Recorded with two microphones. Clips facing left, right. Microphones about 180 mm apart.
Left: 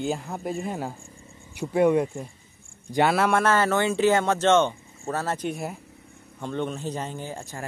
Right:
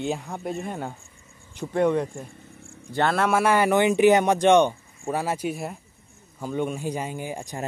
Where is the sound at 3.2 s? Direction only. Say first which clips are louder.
Right 1 dB; 10° right (ahead or behind).